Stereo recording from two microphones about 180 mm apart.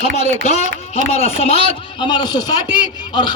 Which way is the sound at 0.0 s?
35° left (ahead or behind).